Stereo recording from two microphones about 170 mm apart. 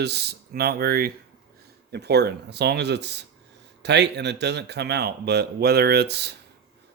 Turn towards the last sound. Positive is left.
turn(degrees=-75)  # may be behind; listen again after turning